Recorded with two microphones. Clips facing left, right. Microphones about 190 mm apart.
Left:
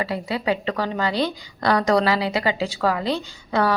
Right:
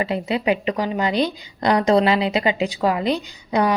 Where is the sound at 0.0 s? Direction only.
20° right (ahead or behind).